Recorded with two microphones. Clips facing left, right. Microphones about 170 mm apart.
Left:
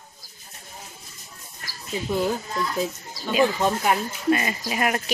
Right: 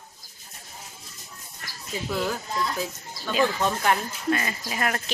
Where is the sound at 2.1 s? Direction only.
25° left (ahead or behind).